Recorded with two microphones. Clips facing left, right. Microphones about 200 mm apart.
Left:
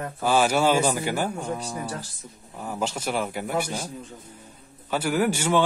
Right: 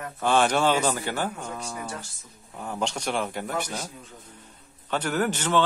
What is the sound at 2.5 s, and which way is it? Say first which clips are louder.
Speech: left 1 dB; 5° left (ahead or behind).